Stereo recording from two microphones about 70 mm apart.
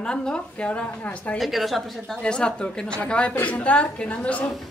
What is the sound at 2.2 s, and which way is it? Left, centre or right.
A woman's voice, centre.